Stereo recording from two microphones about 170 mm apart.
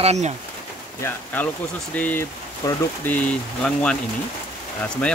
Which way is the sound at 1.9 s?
10° left (ahead or behind).